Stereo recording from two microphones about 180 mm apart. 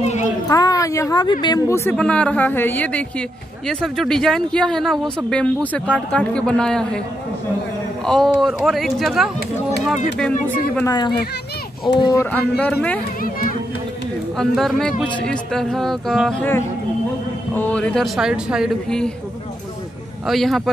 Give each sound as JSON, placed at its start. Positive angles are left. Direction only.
{"t": 0.0, "sound": "a sound", "side_deg": 40}
{"t": 0.5, "sound": "speech", "side_deg": 20}
{"t": 1.9, "sound": "a man's voice", "side_deg": 5}
{"t": 8.0, "sound": "a man's voice", "side_deg": 5}
{"t": 10.9, "sound": "speech", "side_deg": 25}
{"t": 12.3, "sound": "speech", "side_deg": 5}
{"t": 13.2, "sound": "speech", "side_deg": 50}
{"t": 14.3, "sound": "a man's voice", "side_deg": 0}
{"t": 20.2, "sound": "a man's voice", "side_deg": 0}